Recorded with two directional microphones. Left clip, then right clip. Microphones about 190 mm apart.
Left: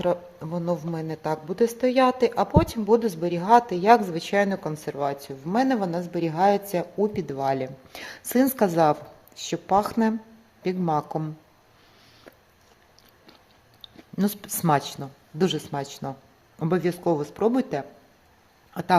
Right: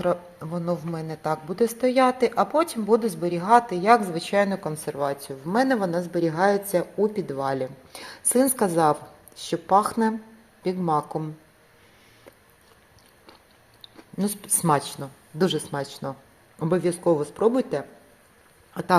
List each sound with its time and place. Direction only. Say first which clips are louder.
0.0 s a woman's voice: even; 25° left (ahead or behind)
14.2 s a woman's voice: even; 30° left (ahead or behind)